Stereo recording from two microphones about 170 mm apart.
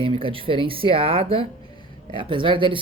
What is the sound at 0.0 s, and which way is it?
Speech, 30° right (ahead or behind).